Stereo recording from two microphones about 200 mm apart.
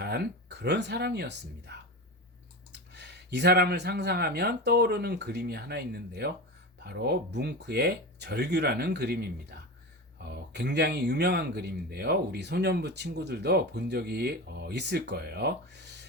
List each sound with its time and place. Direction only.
0.0 s speech: 55° right (ahead or behind)
2.9 s speech: 55° right (ahead or behind)